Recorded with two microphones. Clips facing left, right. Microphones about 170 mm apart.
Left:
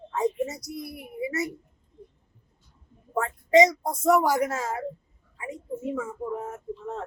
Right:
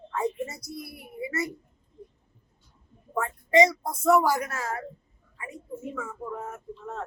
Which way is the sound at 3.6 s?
20° left (ahead or behind).